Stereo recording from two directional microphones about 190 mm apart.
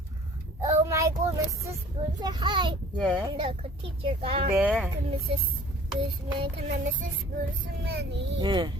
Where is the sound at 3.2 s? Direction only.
25° right (ahead or behind).